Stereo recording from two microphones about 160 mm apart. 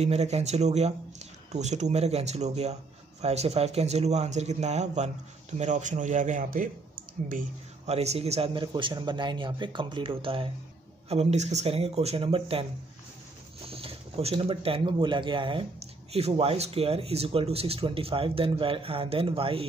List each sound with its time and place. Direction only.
0.0 s speech: 45° right (ahead or behind); by 7.4 s 60° right (ahead or behind)
7.8 s speech: 40° right (ahead or behind)
13.7 s speech: 35° right (ahead or behind)